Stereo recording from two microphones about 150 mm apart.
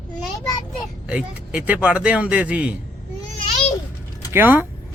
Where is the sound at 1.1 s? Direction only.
5° right (ahead or behind).